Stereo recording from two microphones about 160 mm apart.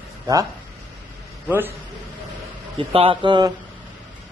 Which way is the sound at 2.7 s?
35° right (ahead or behind).